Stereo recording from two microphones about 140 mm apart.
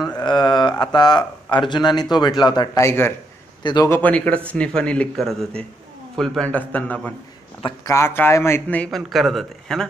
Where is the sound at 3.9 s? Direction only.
10° left (ahead or behind).